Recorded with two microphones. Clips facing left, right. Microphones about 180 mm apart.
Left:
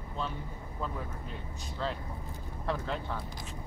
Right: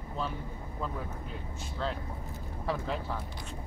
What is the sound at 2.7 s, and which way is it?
Speech, 5° right (ahead or behind).